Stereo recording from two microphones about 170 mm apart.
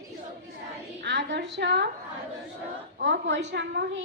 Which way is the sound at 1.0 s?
90° right.